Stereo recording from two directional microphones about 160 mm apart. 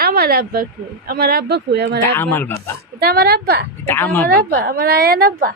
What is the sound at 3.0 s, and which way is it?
Speech, 80° right.